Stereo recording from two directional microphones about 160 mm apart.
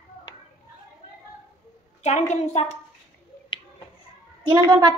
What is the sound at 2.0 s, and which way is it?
Speech, 45° left (ahead or behind).